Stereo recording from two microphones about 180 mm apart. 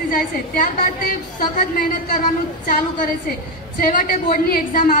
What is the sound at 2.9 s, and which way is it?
A woman's voice, 50° left (ahead or behind).